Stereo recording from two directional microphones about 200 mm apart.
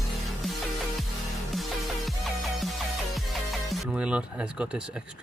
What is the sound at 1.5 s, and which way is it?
Music, centre (ahead or behind).